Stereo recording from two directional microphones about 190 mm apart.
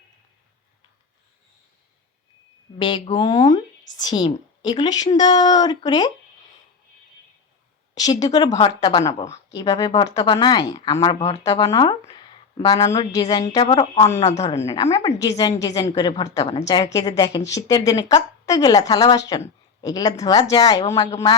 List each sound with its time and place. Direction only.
2.7 s a woman's voice: 25° left (ahead or behind)
7.9 s a woman's voice: 20° left (ahead or behind)
8.4 s a woman's voice: 30° left (ahead or behind)
8.8 s a woman's voice: 20° left (ahead or behind)
14.3 s a woman's voice: 35° left (ahead or behind)
14.6 s a woman's voice: 20° left (ahead or behind)